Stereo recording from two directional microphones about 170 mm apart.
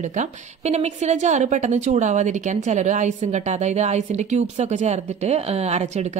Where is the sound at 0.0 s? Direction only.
45° right (ahead or behind).